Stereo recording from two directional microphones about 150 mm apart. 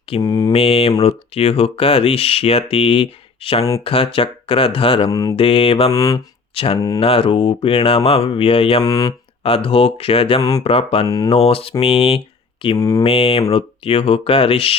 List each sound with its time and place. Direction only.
0.2 s mantra: 25° left (ahead or behind)
0.5 s speech: 40° left (ahead or behind)
5.1 s mantra: 25° left (ahead or behind)
5.4 s speech: 40° left (ahead or behind)
5.9 s mantra: 25° left (ahead or behind)
6.5 s speech: 40° left (ahead or behind)
6.7 s mantra: 25° left (ahead or behind)
7.0 s speech: 40° left (ahead or behind)
8.8 s mantra: 25° left (ahead or behind)
9.4 s speech: 40° left (ahead or behind)
11.0 s mantra: 25° left (ahead or behind)
11.3 s speech: 45° left (ahead or behind)
12.7 s mantra: 25° left (ahead or behind)
13.0 s speech: 40° left (ahead or behind)